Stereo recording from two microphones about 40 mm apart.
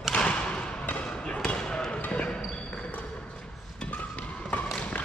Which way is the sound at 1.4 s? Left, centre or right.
Centre.